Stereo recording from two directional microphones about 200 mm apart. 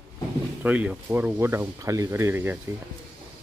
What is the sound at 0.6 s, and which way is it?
Speech, 5° right (ahead or behind).